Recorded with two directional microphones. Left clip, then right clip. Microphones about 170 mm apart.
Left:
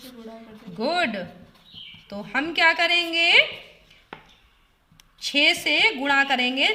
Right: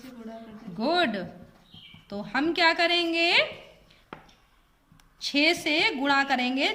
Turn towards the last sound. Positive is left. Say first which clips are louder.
# left 4 dB
turn(degrees=5)  # may be behind; listen again after turning